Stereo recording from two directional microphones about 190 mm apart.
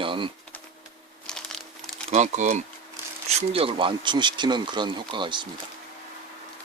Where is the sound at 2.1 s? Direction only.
40° right (ahead or behind).